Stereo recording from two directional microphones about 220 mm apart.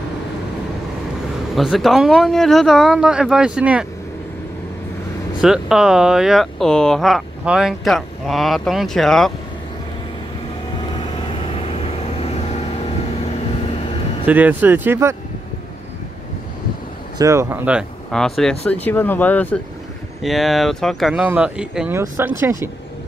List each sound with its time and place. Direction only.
1.5 s speech: centre (ahead or behind)
5.4 s speech: centre (ahead or behind)
11.5 s vehicle: 25° left (ahead or behind)
14.2 s speech: 5° right (ahead or behind)
17.2 s speech: 15° right (ahead or behind)